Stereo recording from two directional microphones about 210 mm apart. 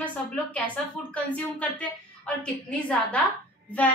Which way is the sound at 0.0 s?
5° left (ahead or behind).